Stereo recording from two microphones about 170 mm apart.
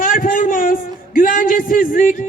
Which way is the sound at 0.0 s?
55° left (ahead or behind).